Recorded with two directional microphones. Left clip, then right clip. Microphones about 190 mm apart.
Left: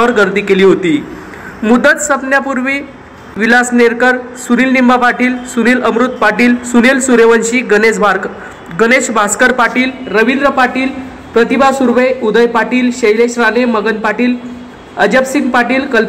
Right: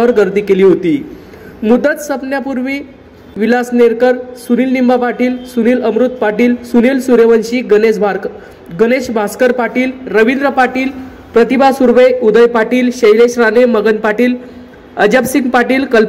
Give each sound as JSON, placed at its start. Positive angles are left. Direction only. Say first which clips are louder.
{"t": 0.0, "sound": "a man's voice", "louder": "even", "side_deg": -35}